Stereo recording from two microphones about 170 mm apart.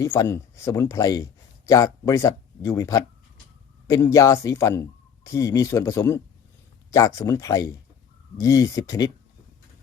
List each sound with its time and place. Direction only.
0.0 s speech: 20° left (ahead or behind)